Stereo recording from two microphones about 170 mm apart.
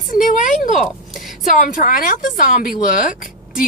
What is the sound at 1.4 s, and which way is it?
A woman's voice, 50° left (ahead or behind).